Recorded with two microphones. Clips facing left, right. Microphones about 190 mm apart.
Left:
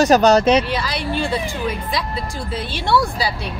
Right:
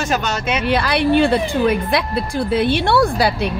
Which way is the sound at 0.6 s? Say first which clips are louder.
Right 7 dB; 60° right (ahead or behind).